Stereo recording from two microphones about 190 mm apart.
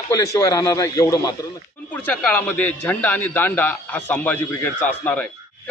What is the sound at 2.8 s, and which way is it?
A man's voice, 10° left (ahead or behind).